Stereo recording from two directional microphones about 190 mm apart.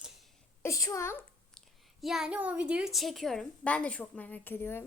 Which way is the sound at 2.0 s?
Centre (ahead or behind).